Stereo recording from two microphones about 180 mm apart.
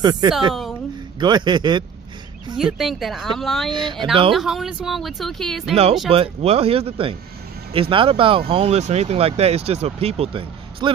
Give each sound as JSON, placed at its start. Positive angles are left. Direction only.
{"t": 0.0, "sound": "a man's voice", "side_deg": -25}
{"t": 2.5, "sound": "speech", "side_deg": 0}
{"t": 3.7, "sound": "a man's voice", "side_deg": -25}
{"t": 4.3, "sound": "speech", "side_deg": 0}
{"t": 6.0, "sound": "speech", "side_deg": -30}